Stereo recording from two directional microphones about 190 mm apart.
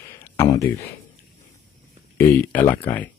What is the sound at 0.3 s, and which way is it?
Speech, 15° left (ahead or behind).